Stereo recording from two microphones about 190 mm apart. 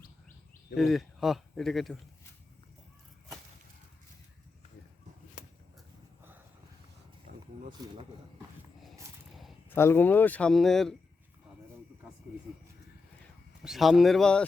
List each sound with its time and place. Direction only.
0.8 s speech: centre (ahead or behind)
7.3 s a sound: 55° right (ahead or behind)
7.8 s speech: 20° right (ahead or behind)
8.8 s a sound: centre (ahead or behind)
9.6 s speech: 15° left (ahead or behind)
13.6 s speech: centre (ahead or behind)